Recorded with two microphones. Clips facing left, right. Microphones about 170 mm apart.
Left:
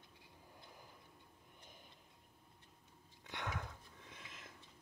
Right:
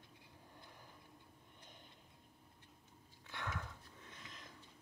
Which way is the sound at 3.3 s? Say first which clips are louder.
Left 1 dB; 20° left (ahead or behind).